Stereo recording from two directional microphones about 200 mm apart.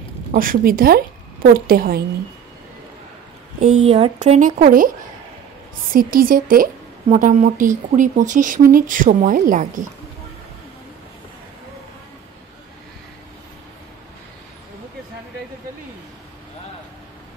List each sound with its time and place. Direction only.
0.3 s a woman's voice: 45° right (ahead or behind)
3.7 s a woman's voice: 30° right (ahead or behind)